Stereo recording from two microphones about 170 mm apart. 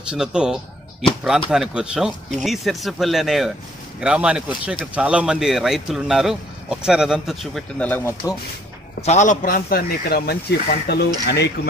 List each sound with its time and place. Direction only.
0.1 s speech: 5° right (ahead or behind); by 8.4 s 15° left (ahead or behind)
9.0 s speech: 45° left (ahead or behind); by 11.5 s 75° left (ahead or behind)